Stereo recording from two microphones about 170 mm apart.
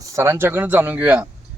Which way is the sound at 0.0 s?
15° right (ahead or behind).